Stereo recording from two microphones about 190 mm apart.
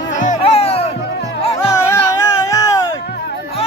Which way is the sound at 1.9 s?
15° left (ahead or behind).